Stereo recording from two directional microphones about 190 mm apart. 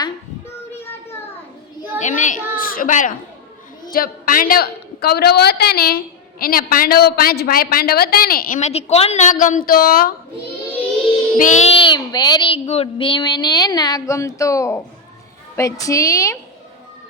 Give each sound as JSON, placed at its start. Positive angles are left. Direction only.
{"t": 2.0, "sound": "a woman's voice", "side_deg": 40}
{"t": 11.3, "sound": "a child's voice", "side_deg": 40}